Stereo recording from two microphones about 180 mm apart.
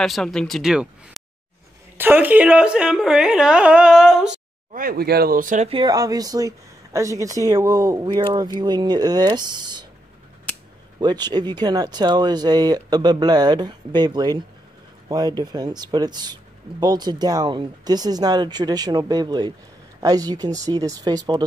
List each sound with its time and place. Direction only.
0.0 s a woman's voice: centre (ahead or behind)
2.0 s a woman's voice: 10° right (ahead or behind)
4.7 s speech: 55° right (ahead or behind)
5.7 s speech: 25° right (ahead or behind)
11.0 s speech: 25° right (ahead or behind)